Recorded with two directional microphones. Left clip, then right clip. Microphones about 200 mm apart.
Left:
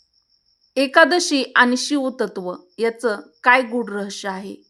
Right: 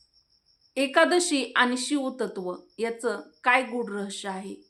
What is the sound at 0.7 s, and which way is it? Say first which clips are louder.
Speech: left 7 dB; 45° left (ahead or behind).